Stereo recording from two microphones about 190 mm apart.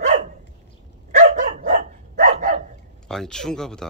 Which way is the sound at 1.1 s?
40° right (ahead or behind).